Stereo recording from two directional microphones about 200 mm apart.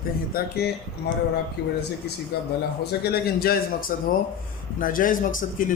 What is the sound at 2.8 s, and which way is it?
A man's voice, 55° left (ahead or behind).